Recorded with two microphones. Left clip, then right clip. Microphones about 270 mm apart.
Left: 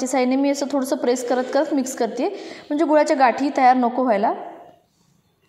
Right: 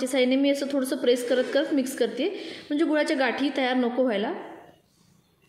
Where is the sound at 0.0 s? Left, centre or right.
Centre.